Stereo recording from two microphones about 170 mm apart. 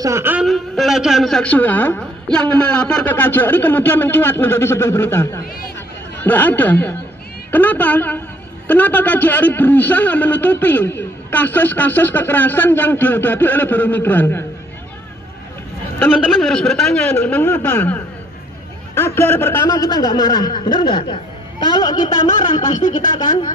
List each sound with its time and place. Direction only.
0.0 s speech: 15° right (ahead or behind)
0.5 s a man's voice: centre (ahead or behind)
16.3 s a man's voice: centre (ahead or behind); by 23.5 s 25° left (ahead or behind)